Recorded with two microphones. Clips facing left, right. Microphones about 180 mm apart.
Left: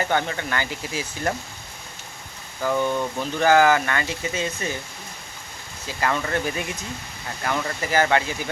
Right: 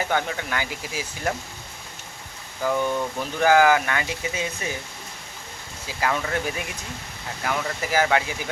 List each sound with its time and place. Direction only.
0.0 s speech: 5° right (ahead or behind)
2.6 s speech: 5° right (ahead or behind)
6.0 s speech: 5° right (ahead or behind)
7.4 s speech: 5° right (ahead or behind)